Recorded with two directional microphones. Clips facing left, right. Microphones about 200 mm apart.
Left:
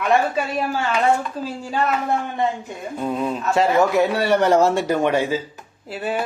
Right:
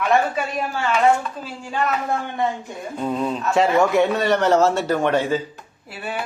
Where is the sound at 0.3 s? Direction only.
40° left (ahead or behind).